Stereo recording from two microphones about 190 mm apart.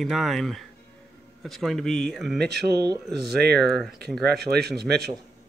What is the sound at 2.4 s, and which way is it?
Speech, 60° right (ahead or behind).